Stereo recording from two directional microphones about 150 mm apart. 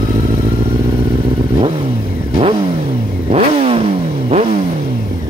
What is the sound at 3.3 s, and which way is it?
Vehicle, 40° right (ahead or behind).